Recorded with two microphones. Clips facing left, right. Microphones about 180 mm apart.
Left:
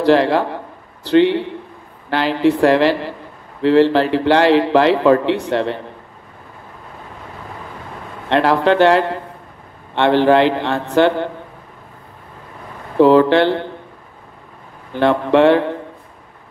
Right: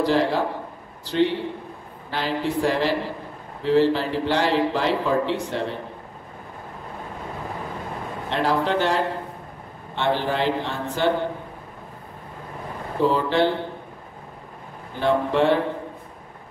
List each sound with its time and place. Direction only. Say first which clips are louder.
0.0 s a man's voice: left 7 dB; 75° left (ahead or behind)
8.3 s a man's voice: left 8 dB; 75° left (ahead or behind)
13.0 s a man's voice: left 9 dB; 75° left (ahead or behind)
15.0 s a man's voice: left 7 dB; 75° left (ahead or behind)